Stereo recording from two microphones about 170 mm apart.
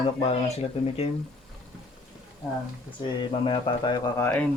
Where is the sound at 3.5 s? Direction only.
25° left (ahead or behind).